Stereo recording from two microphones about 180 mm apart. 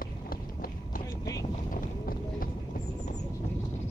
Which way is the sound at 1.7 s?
50° left (ahead or behind).